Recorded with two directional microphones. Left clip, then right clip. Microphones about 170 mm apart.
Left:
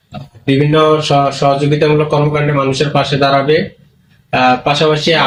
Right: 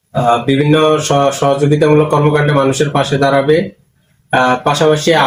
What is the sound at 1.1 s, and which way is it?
Speech, 5° right (ahead or behind).